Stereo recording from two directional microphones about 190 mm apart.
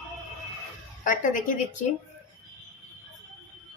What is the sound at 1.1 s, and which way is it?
Speech, 45° left (ahead or behind).